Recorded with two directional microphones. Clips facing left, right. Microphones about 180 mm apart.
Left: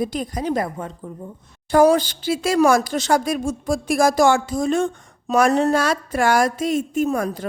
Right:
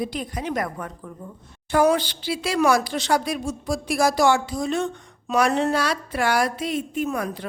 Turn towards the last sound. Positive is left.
turn(degrees=40)  # may be behind; listen again after turning